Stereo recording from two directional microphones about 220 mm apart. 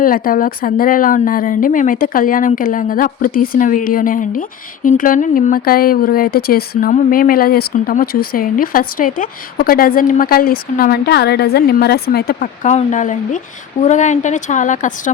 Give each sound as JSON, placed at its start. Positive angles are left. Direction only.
{"t": 0.0, "sound": "speech", "side_deg": 40}